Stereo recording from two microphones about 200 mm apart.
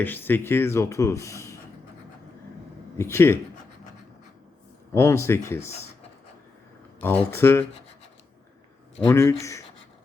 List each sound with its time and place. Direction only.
0.0 s speech: 10° left (ahead or behind)
3.0 s speech: 10° left (ahead or behind)
4.9 s speech: 15° left (ahead or behind)
7.0 s speech: 10° left (ahead or behind)
9.0 s speech: 15° left (ahead or behind)